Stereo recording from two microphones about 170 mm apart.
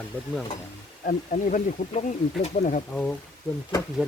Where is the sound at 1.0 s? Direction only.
50° left (ahead or behind).